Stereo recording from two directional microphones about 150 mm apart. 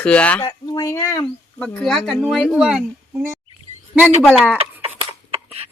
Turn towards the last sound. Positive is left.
turn(degrees=-40)  # may be behind; listen again after turning